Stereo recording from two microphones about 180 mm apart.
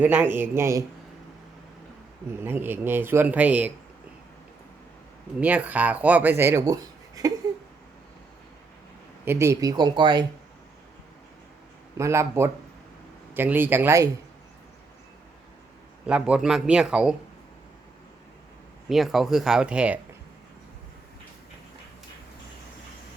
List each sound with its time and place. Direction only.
0.0 s speech: 10° right (ahead or behind)
2.4 s speech: 10° right (ahead or behind)
5.4 s speech: 10° right (ahead or behind)
9.2 s speech: 15° right (ahead or behind)
11.9 s speech: 15° right (ahead or behind)
16.0 s a man's voice: 5° right (ahead or behind)
18.9 s a man's voice: centre (ahead or behind)